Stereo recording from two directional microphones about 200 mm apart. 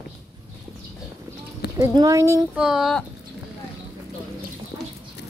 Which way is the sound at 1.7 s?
15° right (ahead or behind).